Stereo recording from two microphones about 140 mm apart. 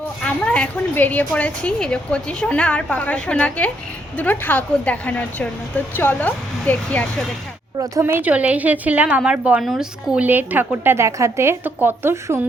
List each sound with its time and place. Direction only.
0.2 s a woman's voice: 10° left (ahead or behind)
7.8 s a woman's voice: 20° right (ahead or behind)